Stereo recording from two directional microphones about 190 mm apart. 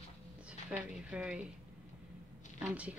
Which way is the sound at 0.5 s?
5° right (ahead or behind).